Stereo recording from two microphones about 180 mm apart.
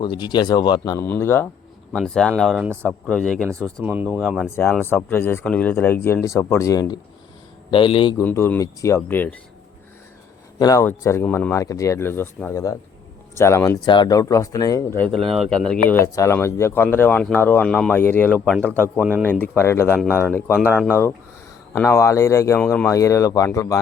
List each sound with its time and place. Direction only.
0.0 s speech: 25° left (ahead or behind)
1.0 s speech: 15° left (ahead or behind)
3.8 s speech: 10° right (ahead or behind)
4.5 s speech: 10° left (ahead or behind); by 8.2 s 30° left (ahead or behind)
8.2 s speech: 10° left (ahead or behind)
10.6 s speech: 20° left (ahead or behind)
18.9 s speech: 10° right (ahead or behind)
19.2 s speech: 10° left (ahead or behind)